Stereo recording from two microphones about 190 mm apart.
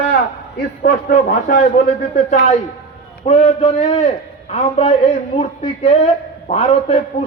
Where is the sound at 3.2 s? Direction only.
30° left (ahead or behind).